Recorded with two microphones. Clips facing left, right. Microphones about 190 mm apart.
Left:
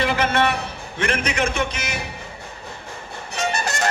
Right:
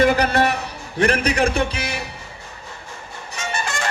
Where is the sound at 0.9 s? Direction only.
35° right (ahead or behind).